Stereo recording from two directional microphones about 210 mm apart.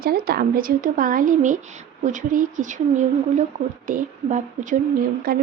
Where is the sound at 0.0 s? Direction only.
45° right (ahead or behind).